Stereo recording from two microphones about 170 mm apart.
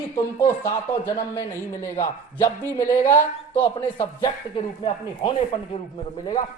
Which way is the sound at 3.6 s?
30° left (ahead or behind).